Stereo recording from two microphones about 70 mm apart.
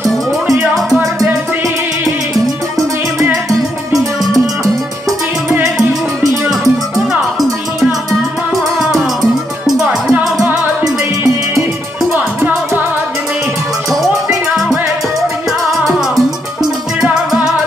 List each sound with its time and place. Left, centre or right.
3.4 s music: centre
6.5 s music: centre
8.5 s music: centre
12.4 s music: right
15.8 s music: centre